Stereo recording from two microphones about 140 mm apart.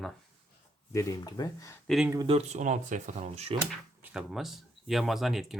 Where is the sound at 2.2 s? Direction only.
45° right (ahead or behind).